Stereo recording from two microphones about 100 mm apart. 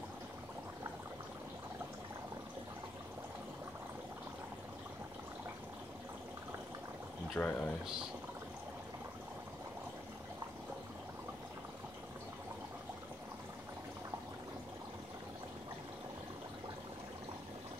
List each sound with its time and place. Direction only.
7.3 s speech: 15° left (ahead or behind)